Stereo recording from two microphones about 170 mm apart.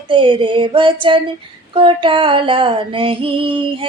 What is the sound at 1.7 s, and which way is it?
Female singing, 30° right (ahead or behind).